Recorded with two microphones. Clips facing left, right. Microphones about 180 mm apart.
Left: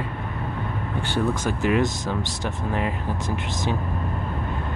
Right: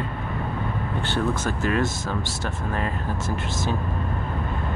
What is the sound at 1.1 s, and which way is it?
Speech, 15° left (ahead or behind).